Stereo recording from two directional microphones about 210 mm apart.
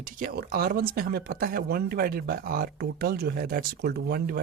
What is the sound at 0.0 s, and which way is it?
Speech, 40° right (ahead or behind).